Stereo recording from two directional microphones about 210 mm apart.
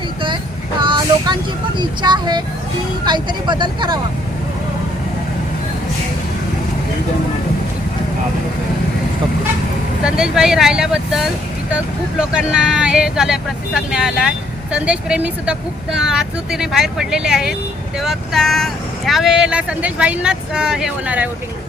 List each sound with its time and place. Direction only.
0.8 s vehicle: 20° right (ahead or behind)
1.8 s speech: 20° right (ahead or behind)
10.0 s speech: 5° right (ahead or behind)
12.3 s speech: 5° right (ahead or behind)